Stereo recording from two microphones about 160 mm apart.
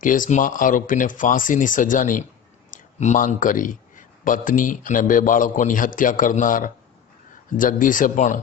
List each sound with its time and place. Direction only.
0.0 s speech: 55° left (ahead or behind)